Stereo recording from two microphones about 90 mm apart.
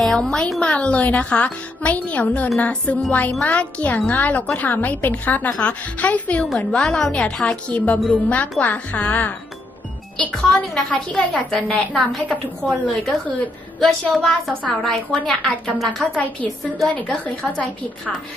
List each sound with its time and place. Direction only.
0.0 s a woman's voice: 5° left (ahead or behind)
13.7 s a woman's voice: 5° left (ahead or behind)
17.2 s a woman's voice: 15° left (ahead or behind)